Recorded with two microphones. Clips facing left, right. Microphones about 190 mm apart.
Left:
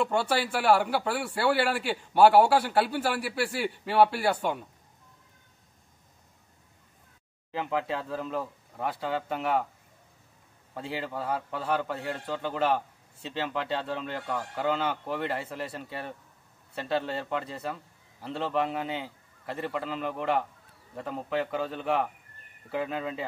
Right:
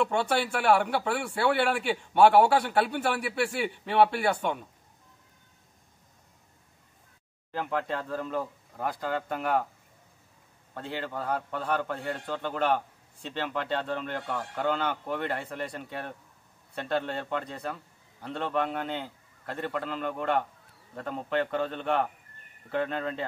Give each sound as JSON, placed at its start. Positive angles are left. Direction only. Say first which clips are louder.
{"t": 0.0, "sound": "a man's voice", "louder": "even", "side_deg": 5}
{"t": 7.5, "sound": "a man's voice", "louder": "left 1 dB", "side_deg": 5}
{"t": 10.7, "sound": "a man's voice", "louder": "left 1 dB", "side_deg": 5}